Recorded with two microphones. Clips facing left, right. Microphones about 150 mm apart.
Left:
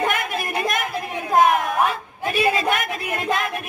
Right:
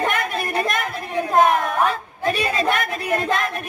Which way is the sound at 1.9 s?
35° right (ahead or behind).